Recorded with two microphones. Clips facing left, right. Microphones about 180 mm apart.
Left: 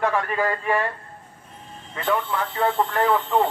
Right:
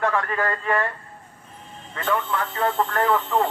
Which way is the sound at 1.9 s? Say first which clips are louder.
Left 1 dB; 20° left (ahead or behind).